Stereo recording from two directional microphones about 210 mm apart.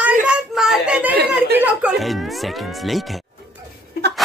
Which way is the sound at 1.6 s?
5° right (ahead or behind).